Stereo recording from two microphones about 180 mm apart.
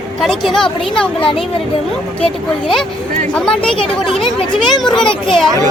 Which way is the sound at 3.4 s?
5° left (ahead or behind).